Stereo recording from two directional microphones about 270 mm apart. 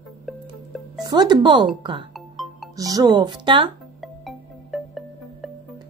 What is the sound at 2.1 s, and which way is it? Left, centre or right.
Music, centre.